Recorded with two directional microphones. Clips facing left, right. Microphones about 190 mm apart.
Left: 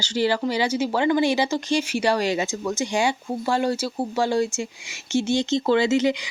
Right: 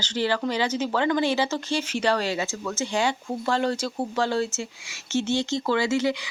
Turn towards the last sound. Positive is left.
turn(degrees=20)  # may be behind; listen again after turning